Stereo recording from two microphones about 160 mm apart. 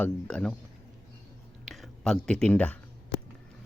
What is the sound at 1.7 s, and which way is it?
Speech, 5° left (ahead or behind).